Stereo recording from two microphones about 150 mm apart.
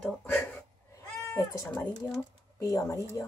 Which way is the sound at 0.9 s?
20° left (ahead or behind).